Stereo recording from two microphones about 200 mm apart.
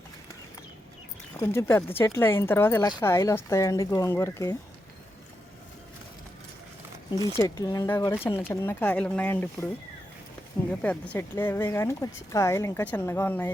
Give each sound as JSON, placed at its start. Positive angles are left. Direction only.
{"t": 1.4, "sound": "speech", "side_deg": 10}
{"t": 7.3, "sound": "speech", "side_deg": 15}
{"t": 10.7, "sound": "speech", "side_deg": 5}